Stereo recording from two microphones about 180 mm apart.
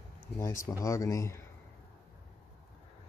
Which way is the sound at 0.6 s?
15° left (ahead or behind).